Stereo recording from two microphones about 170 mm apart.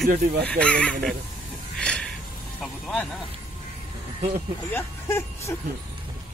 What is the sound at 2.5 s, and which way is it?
Music, 5° left (ahead or behind).